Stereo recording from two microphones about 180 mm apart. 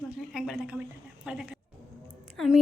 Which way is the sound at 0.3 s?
5° right (ahead or behind).